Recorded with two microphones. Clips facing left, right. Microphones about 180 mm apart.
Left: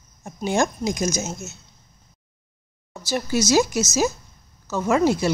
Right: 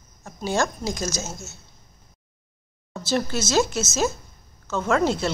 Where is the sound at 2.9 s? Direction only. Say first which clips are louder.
Left 1 dB; 10° left (ahead or behind).